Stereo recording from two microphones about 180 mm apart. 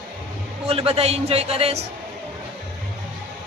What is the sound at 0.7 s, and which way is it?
A man's voice, 35° right (ahead or behind).